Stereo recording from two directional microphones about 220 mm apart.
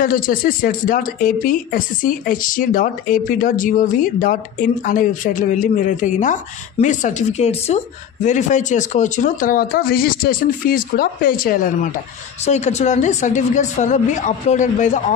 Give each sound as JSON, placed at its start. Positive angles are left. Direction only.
{"t": 0.0, "sound": "speech", "side_deg": 40}